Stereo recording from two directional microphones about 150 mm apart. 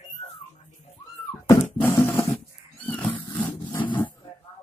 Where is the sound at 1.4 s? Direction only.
15° left (ahead or behind).